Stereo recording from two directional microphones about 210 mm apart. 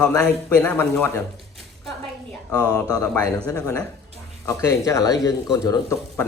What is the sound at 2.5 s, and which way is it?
A man's voice, 20° left (ahead or behind).